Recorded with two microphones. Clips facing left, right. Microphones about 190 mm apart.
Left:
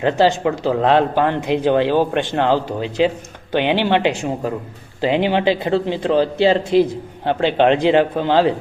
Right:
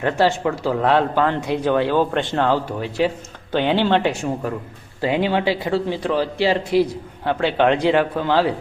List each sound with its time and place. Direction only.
0.0 s speech: 20° left (ahead or behind)